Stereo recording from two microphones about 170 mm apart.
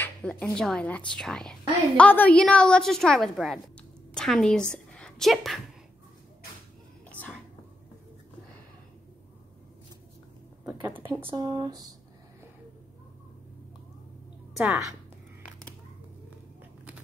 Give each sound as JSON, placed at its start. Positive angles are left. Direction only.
{"t": 0.0, "sound": "a woman's voice", "side_deg": 5}
{"t": 7.1, "sound": "whispering", "side_deg": 10}
{"t": 10.6, "sound": "a sound", "side_deg": -10}
{"t": 11.2, "sound": "speech", "side_deg": -25}
{"t": 14.6, "sound": "a woman's voice", "side_deg": -10}